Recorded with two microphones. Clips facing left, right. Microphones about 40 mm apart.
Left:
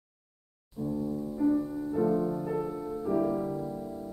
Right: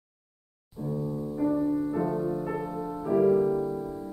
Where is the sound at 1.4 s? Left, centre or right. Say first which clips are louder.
Right 2 dB; right.